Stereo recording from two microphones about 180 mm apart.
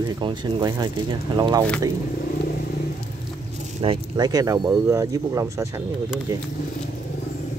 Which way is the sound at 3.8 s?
30° right (ahead or behind).